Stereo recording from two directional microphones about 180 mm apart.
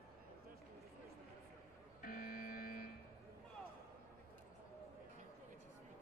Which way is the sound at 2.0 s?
50° left (ahead or behind).